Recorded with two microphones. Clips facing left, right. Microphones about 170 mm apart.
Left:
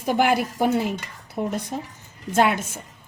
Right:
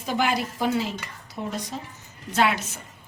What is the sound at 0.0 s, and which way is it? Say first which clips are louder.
Speech: left 5 dB; 55° left (ahead or behind).